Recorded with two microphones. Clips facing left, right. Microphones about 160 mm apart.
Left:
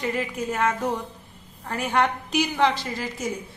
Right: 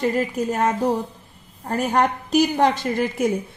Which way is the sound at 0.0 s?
40° right (ahead or behind).